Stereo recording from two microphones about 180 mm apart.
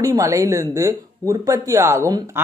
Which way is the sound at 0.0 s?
20° right (ahead or behind).